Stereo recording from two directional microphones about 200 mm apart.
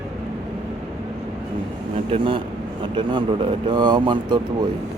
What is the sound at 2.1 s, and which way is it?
Speech, 25° right (ahead or behind).